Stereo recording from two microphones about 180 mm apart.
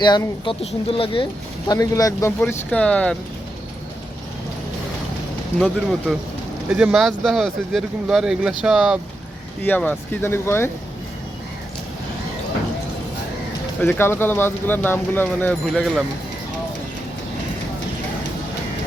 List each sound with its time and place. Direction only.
0.0 s speech: 25° left (ahead or behind)
2.4 s speech: 5° left (ahead or behind)
5.5 s speech: 5° left (ahead or behind)
9.6 s speech: 10° left (ahead or behind)
13.8 s speech: 10° left (ahead or behind)